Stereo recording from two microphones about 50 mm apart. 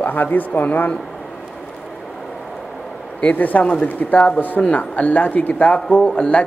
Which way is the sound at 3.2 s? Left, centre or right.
Left.